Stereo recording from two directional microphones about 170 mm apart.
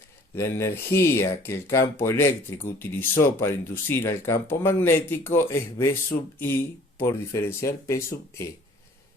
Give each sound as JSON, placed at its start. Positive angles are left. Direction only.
{"t": 0.3, "sound": "speech", "side_deg": 15}